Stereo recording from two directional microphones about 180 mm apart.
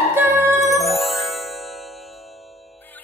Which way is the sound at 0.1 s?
15° right (ahead or behind).